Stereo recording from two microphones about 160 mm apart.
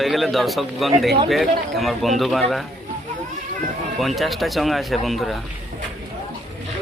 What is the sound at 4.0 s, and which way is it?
A man's voice, centre (ahead or behind).